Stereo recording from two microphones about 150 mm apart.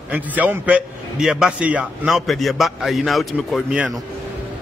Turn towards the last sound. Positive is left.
turn(degrees=-5)  # may be behind; listen again after turning